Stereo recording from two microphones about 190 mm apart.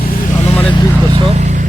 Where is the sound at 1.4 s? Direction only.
40° right (ahead or behind).